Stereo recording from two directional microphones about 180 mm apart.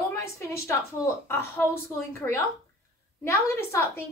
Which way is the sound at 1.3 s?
15° left (ahead or behind).